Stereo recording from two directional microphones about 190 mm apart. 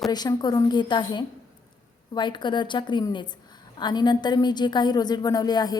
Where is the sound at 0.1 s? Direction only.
20° left (ahead or behind).